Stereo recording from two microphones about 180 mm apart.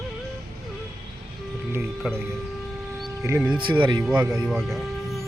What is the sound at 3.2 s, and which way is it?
Speech, 15° right (ahead or behind).